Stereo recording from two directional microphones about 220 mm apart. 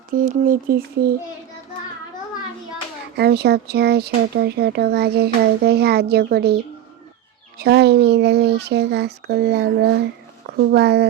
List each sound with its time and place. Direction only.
0.1 s speech: 40° right (ahead or behind)
3.2 s speech: 45° right (ahead or behind)
7.6 s speech: 50° right (ahead or behind)